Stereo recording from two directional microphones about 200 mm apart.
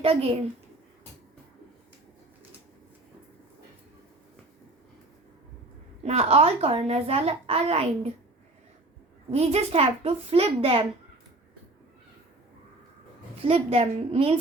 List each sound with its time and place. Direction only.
0.0 s a woman's voice: 30° right (ahead or behind)
6.0 s a child's voice: 30° right (ahead or behind)
9.3 s a child's voice: 30° right (ahead or behind)
13.4 s a woman's voice: 25° right (ahead or behind)